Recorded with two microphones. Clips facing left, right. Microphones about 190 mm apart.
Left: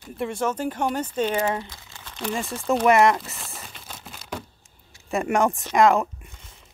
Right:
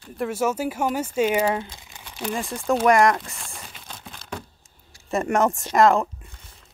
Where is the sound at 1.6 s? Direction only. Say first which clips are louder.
Right 2 dB; 15° right (ahead or behind).